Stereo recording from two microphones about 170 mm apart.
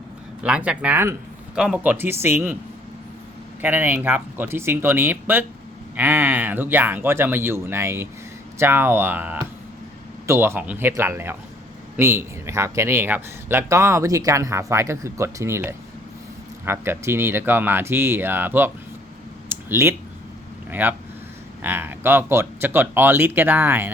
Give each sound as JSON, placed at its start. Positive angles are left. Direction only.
{"t": 0.4, "sound": "a man's voice", "side_deg": -5}
{"t": 3.6, "sound": "a man's voice", "side_deg": -10}
{"t": 19.5, "sound": "a sound", "side_deg": -15}
{"t": 20.7, "sound": "a man's voice", "side_deg": -10}